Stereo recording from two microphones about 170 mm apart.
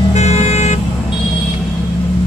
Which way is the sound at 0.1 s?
40° left (ahead or behind).